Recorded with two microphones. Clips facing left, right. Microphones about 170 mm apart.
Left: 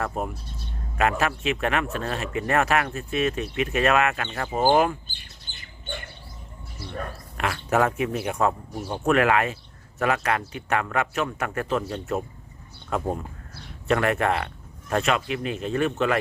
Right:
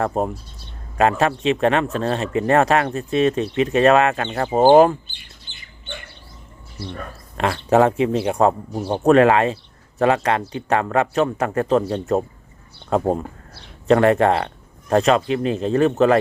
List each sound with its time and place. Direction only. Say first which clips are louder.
0.0 s speech: right 7 dB; 35° right (ahead or behind)
7.3 s speech: right 7 dB; 30° right (ahead or behind)